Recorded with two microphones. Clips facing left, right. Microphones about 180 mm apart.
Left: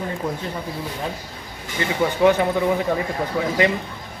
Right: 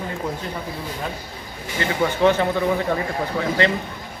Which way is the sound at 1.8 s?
15° left (ahead or behind).